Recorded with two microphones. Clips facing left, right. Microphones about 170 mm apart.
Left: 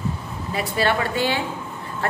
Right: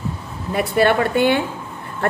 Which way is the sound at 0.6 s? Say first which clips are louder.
Right 6 dB; 55° right (ahead or behind).